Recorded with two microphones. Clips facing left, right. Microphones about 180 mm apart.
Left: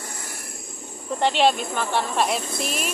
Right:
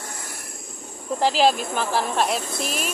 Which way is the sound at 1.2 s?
Centre (ahead or behind).